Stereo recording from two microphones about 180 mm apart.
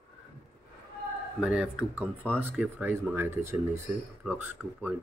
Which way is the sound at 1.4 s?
5° right (ahead or behind).